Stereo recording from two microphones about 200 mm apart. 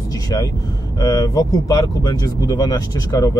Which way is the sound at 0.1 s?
20° left (ahead or behind).